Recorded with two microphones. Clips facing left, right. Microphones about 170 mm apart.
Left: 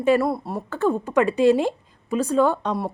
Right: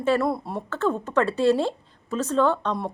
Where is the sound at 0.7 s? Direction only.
10° left (ahead or behind).